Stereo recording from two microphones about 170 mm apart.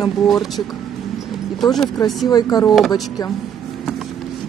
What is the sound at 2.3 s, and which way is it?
Speech, 20° left (ahead or behind).